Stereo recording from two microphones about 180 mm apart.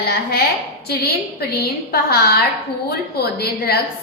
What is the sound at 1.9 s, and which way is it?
Speech, 60° left (ahead or behind).